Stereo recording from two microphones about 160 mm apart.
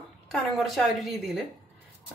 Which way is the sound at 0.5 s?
Centre (ahead or behind).